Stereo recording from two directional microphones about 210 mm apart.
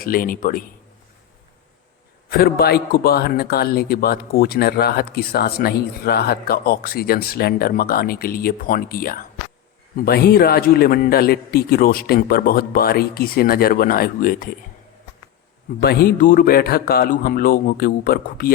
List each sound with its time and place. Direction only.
0.0 s a man's voice: 40° left (ahead or behind)
2.3 s a man's voice: 50° left (ahead or behind)
15.8 s a man's voice: 50° left (ahead or behind)